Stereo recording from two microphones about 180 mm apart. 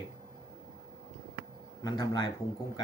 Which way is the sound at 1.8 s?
20° left (ahead or behind).